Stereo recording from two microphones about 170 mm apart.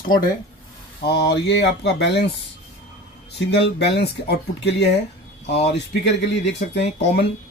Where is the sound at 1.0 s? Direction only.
75° left (ahead or behind).